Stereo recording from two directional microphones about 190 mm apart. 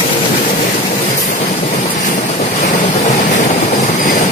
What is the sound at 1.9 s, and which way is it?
Vehicle, 40° left (ahead or behind).